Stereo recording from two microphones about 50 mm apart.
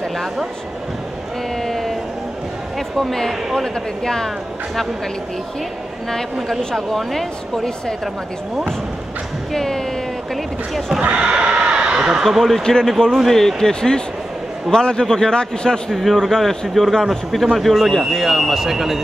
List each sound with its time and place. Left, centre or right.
1.6 s a sound: centre
3.0 s a man's voice: centre
6.7 s a man's voice: centre
9.5 s a man's voice: centre
11.0 s neigh: centre
12.3 s a man's voice: centre